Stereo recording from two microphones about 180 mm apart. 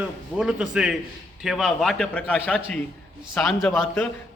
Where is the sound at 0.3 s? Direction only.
5° right (ahead or behind).